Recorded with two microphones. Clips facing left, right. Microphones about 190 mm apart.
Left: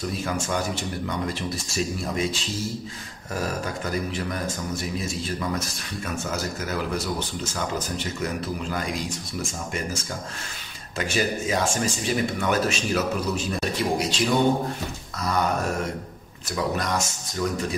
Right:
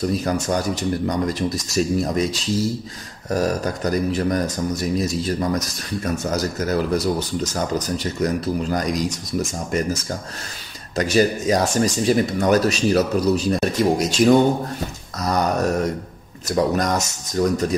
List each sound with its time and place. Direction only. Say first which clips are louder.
0.1 s speech: right 6 dB; 40° right (ahead or behind)
11.0 s speech: right 7 dB; 40° right (ahead or behind)